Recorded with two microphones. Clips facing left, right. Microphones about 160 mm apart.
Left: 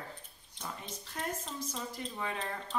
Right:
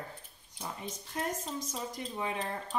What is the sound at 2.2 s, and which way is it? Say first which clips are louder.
Speech: right 3 dB; 15° right (ahead or behind).